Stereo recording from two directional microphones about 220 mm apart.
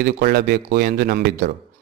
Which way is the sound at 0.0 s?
45° right (ahead or behind).